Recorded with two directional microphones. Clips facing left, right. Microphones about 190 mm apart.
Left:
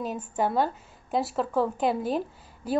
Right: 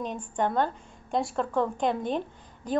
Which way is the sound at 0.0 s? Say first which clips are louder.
Left 1 dB; 5° left (ahead or behind).